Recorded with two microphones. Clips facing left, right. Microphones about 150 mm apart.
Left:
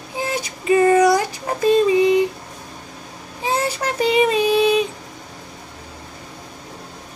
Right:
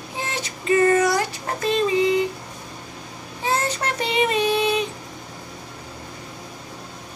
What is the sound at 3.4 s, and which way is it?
Child singing, 15° left (ahead or behind).